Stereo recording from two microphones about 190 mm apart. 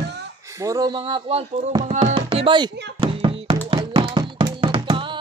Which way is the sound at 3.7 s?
25° right (ahead or behind).